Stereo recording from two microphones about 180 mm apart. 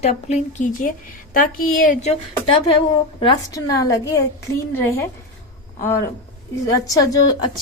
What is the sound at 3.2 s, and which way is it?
A woman's voice, 25° left (ahead or behind).